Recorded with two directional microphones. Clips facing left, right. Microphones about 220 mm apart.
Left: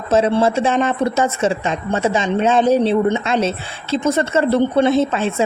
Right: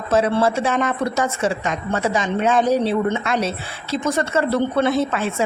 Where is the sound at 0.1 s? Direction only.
25° left (ahead or behind).